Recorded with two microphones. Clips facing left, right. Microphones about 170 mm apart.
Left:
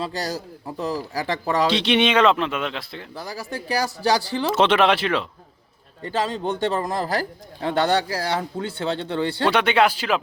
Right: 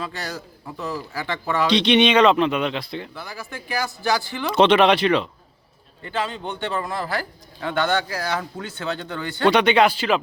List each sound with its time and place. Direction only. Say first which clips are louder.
0.0 s a man's voice: left 4 dB; 35° left (ahead or behind)
1.6 s speech: right 4 dB; 5° left (ahead or behind)
3.2 s a man's voice: left 4 dB; 35° left (ahead or behind)
4.5 s speech: right 3 dB; 5° left (ahead or behind)
6.0 s a man's voice: left 3 dB; 35° left (ahead or behind)
9.5 s speech: right 3 dB; 5° left (ahead or behind)